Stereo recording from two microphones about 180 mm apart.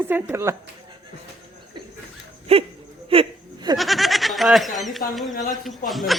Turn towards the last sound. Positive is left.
turn(degrees=0)  # may be behind; listen again after turning